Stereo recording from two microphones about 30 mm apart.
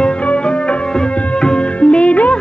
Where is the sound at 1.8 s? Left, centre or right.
Left.